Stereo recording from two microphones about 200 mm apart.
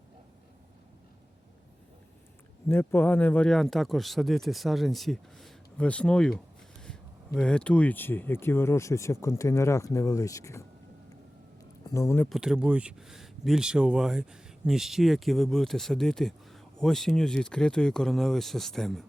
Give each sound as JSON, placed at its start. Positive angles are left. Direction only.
{"t": 2.6, "sound": "speech", "side_deg": 10}
{"t": 7.3, "sound": "speech", "side_deg": 5}
{"t": 11.9, "sound": "speech", "side_deg": 15}
{"t": 12.3, "sound": "speech", "side_deg": -5}